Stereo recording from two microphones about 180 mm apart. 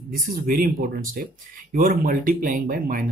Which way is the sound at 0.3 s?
55° right (ahead or behind).